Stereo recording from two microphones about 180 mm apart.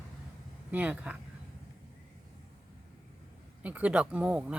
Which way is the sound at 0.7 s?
10° right (ahead or behind).